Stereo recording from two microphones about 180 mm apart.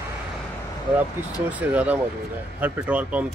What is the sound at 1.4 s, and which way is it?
Speech, 10° right (ahead or behind).